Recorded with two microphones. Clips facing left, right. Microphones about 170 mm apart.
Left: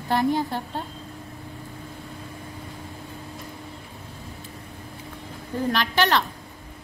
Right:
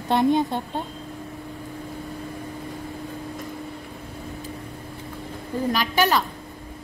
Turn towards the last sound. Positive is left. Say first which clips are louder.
# right 1 dB
turn(degrees=-10)  # may be behind; listen again after turning